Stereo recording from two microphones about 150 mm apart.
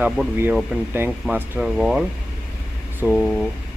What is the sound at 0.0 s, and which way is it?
Speech, 10° right (ahead or behind).